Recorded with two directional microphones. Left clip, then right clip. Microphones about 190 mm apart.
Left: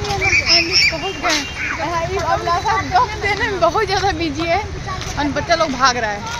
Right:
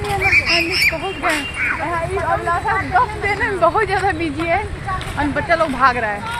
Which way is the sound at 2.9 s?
Centre (ahead or behind).